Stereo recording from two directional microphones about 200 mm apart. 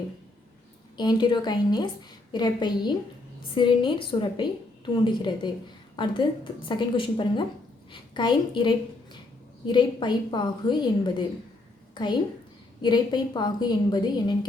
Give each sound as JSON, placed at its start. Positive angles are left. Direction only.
{"t": 0.9, "sound": "a woman's voice", "side_deg": 20}